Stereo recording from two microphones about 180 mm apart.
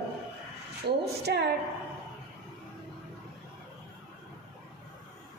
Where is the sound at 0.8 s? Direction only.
65° right (ahead or behind).